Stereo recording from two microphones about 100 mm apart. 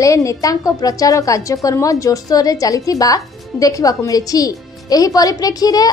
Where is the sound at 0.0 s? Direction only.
35° left (ahead or behind).